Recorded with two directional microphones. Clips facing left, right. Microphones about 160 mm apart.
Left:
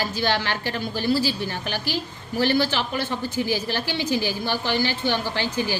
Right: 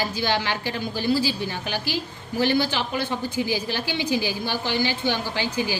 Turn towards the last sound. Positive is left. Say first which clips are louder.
# left 1 dB
turn(degrees=-15)  # may be behind; listen again after turning